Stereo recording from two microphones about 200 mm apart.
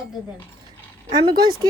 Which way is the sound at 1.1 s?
20° right (ahead or behind).